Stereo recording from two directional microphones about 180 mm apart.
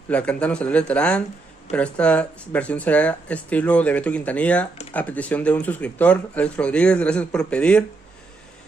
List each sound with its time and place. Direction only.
0.1 s speech: 5° left (ahead or behind)